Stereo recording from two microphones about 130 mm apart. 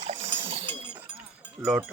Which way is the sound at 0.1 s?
55° right (ahead or behind).